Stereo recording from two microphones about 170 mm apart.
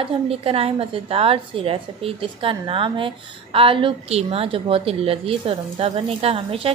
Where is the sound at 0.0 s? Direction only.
35° right (ahead or behind).